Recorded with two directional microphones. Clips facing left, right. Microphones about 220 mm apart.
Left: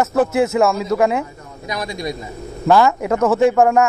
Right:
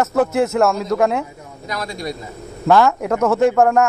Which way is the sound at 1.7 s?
15° left (ahead or behind).